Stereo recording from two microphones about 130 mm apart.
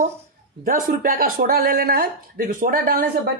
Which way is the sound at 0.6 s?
90° right.